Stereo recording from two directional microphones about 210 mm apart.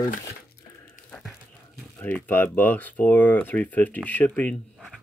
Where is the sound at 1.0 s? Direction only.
35° left (ahead or behind).